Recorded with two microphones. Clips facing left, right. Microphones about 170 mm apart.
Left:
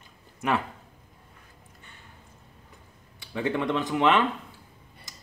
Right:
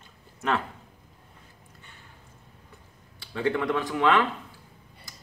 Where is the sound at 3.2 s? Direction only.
20° left (ahead or behind).